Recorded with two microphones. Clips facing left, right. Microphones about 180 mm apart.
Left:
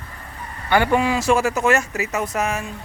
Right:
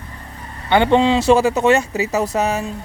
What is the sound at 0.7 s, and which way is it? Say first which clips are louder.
Speech: right 4 dB; 25° right (ahead or behind).